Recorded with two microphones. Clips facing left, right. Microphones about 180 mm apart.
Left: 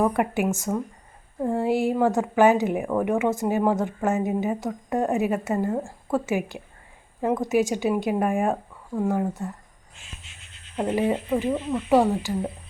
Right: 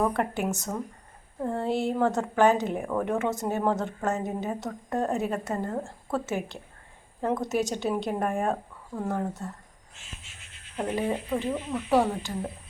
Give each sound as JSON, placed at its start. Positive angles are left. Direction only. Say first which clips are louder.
{"t": 0.0, "sound": "a woman's voice", "louder": "left 4 dB", "side_deg": 10}
{"t": 10.8, "sound": "a woman's voice", "louder": "left 5 dB", "side_deg": 15}